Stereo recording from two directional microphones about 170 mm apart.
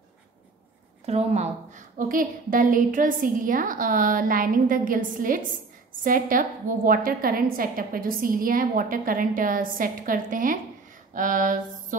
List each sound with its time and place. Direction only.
1.0 s a woman's voice: 40° right (ahead or behind)